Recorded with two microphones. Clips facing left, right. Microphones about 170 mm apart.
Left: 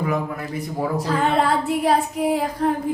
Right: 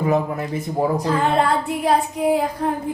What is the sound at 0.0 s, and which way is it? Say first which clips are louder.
Speech: right 4 dB; 25° right (ahead or behind).